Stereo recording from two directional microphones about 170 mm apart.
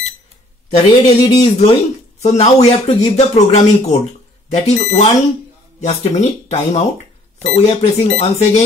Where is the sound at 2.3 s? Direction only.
40° left (ahead or behind).